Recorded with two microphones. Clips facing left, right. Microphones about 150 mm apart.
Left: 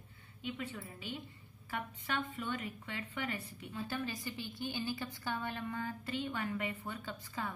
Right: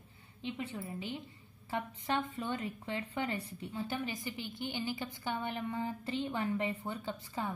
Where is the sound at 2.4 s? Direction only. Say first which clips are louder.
Right 3 dB; 30° right (ahead or behind).